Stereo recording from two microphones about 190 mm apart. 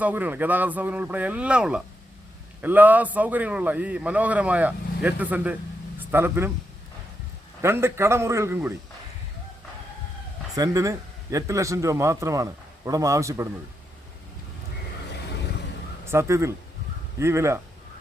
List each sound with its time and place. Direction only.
0.0 s a man's voice: 10° right (ahead or behind)
7.6 s a man's voice: 15° right (ahead or behind)
10.5 s a man's voice: 15° right (ahead or behind)
16.0 s a man's voice: 15° right (ahead or behind)